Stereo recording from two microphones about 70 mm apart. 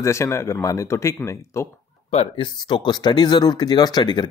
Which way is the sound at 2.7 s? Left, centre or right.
Left.